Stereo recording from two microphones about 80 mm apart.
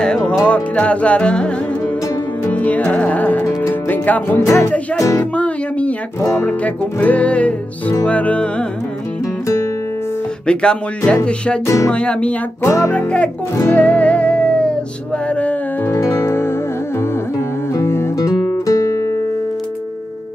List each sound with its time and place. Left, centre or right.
0.0 s music: centre
2.5 s music: centre
4.5 s music: left
5.3 s music: centre
10.4 s music: centre
11.6 s music: left
11.9 s music: centre
12.6 s music: left
12.9 s music: centre
15.9 s music: left
17.7 s music: left
18.2 s guitar: left